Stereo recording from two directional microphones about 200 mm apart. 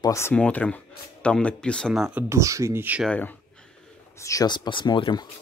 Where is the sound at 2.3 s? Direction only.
15° right (ahead or behind).